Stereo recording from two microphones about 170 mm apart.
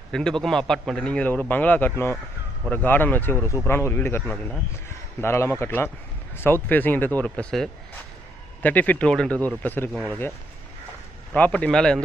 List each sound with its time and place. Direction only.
0.1 s a man's voice: 5° left (ahead or behind)
11.3 s a man's voice: 10° left (ahead or behind)